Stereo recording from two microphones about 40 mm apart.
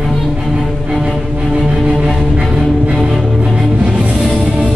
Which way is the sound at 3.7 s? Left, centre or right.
Centre.